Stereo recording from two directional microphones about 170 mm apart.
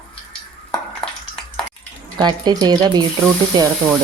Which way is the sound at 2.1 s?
25° right (ahead or behind).